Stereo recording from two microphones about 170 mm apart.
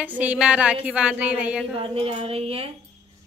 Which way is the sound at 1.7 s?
35° right (ahead or behind).